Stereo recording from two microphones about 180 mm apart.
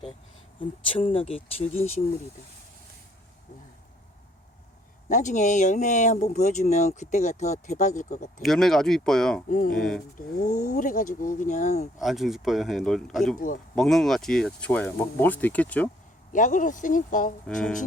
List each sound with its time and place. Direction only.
0.6 s speech: 30° left (ahead or behind)
5.0 s speech: 45° left (ahead or behind)
8.4 s speech: centre (ahead or behind)
9.5 s speech: 50° left (ahead or behind)
9.7 s speech: 5° left (ahead or behind)
10.2 s speech: 45° left (ahead or behind)
11.9 s speech: centre (ahead or behind)
16.3 s speech: 45° left (ahead or behind)
17.4 s speech: 5° left (ahead or behind)